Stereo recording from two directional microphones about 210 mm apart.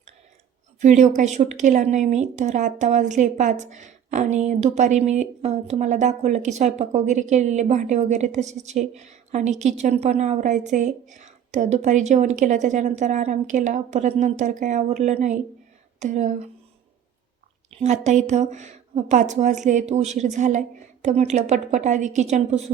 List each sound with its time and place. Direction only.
0.8 s speech: 35° right (ahead or behind)
17.7 s speech: 35° right (ahead or behind)